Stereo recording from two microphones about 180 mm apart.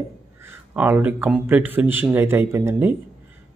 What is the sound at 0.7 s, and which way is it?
Speech, 10° right (ahead or behind).